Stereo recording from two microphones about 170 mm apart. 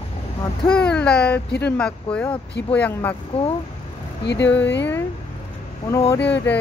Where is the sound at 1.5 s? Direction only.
80° left.